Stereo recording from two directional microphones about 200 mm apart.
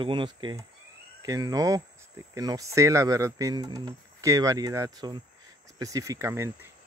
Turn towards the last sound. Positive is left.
turn(degrees=-15)  # may be behind; listen again after turning